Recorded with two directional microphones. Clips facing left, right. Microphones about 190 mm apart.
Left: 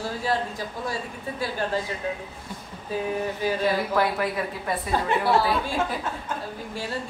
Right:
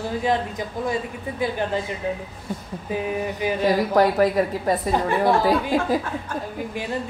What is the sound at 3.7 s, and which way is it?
A woman's voice, 40° right (ahead or behind).